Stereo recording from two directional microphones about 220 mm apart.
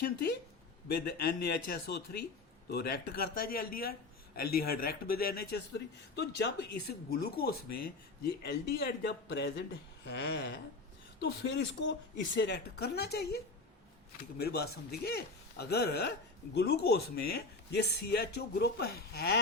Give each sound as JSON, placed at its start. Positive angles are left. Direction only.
{"t": 0.0, "sound": "a man's voice", "side_deg": 45}